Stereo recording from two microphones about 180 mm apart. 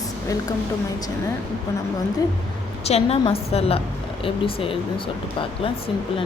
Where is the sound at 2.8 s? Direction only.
35° left (ahead or behind).